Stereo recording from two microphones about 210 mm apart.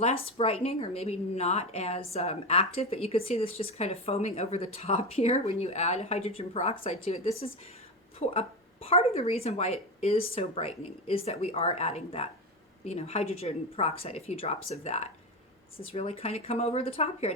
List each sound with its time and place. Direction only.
0.0 s speech: 30° left (ahead or behind)